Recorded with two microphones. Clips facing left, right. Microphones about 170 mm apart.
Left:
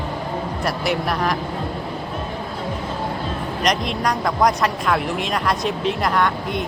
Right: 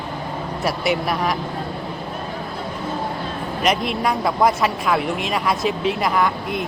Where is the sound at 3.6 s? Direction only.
5° right (ahead or behind).